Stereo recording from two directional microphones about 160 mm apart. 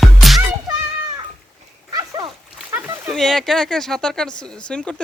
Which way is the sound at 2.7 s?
10° right (ahead or behind).